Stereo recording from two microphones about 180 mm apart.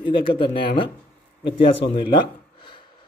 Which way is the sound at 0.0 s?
30° left (ahead or behind).